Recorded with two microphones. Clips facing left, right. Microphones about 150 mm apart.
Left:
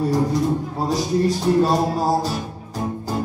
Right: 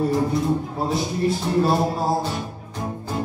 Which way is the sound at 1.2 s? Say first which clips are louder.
Left 1 dB; 40° left (ahead or behind).